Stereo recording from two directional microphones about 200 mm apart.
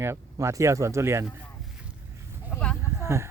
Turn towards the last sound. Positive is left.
turn(degrees=-15)  # may be behind; listen again after turning